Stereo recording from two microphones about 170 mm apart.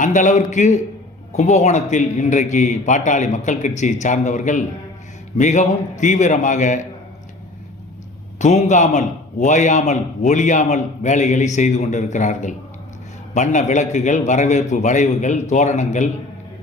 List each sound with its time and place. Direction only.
0.0 s a man's voice: 45° left (ahead or behind)
8.4 s a man's voice: 45° left (ahead or behind)